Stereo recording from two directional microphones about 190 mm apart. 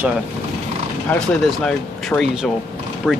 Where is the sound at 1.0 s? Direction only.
5° left (ahead or behind).